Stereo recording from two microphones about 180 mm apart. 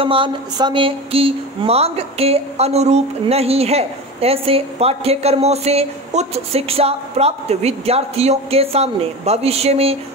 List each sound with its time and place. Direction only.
0.0 s speech: 30° right (ahead or behind)